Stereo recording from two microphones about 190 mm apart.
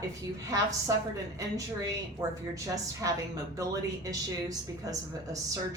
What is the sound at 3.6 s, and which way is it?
Speech, 20° right (ahead or behind).